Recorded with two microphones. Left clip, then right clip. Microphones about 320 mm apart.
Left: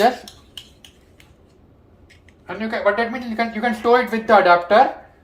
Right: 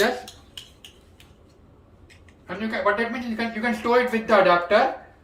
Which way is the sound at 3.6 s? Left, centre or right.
Centre.